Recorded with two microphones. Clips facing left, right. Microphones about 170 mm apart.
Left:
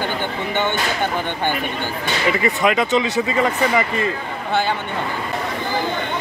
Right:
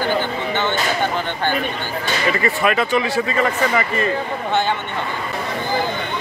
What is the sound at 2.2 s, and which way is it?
Speech, 15° left (ahead or behind).